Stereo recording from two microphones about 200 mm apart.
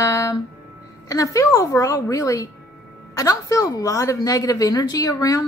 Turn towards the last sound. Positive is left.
turn(degrees=15)  # may be behind; listen again after turning